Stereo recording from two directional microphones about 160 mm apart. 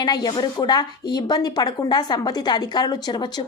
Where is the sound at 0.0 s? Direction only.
25° left (ahead or behind).